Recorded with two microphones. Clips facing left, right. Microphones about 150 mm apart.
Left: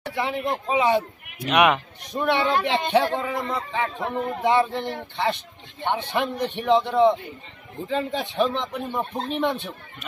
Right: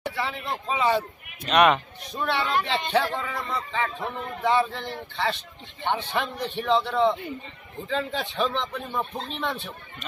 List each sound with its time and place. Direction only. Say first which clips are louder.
0.1 s a sound: left 4 dB; 15° left (ahead or behind)
0.7 s speech: left 2 dB; 15° left (ahead or behind)
4.0 s a man's voice: left 5 dB; 45° left (ahead or behind)
4.4 s speech: left 2 dB; 15° left (ahead or behind)